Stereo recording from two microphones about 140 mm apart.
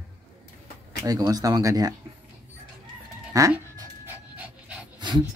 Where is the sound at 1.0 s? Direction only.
25° right (ahead or behind).